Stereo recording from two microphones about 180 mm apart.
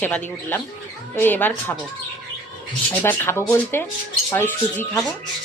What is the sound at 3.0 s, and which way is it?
A woman's voice, 15° left (ahead or behind).